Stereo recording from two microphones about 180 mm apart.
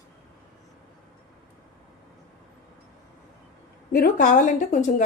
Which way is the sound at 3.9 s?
55° left (ahead or behind).